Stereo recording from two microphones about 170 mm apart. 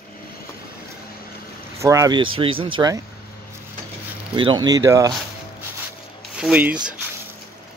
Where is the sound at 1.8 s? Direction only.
20° right (ahead or behind).